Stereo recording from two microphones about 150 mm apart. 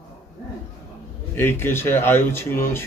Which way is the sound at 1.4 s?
15° left (ahead or behind).